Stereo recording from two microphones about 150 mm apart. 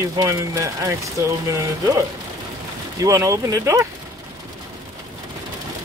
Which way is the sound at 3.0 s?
20° right (ahead or behind).